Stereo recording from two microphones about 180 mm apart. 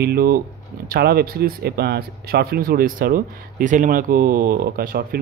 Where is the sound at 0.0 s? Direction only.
60° right (ahead or behind).